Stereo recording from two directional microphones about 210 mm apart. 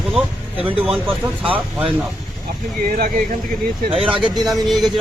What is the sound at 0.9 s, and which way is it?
Speech, 5° right (ahead or behind).